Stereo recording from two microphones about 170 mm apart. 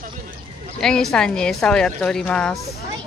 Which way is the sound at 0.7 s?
5° left (ahead or behind).